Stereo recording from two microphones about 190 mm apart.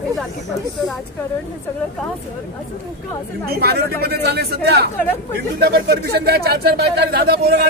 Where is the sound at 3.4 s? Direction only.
55° right (ahead or behind).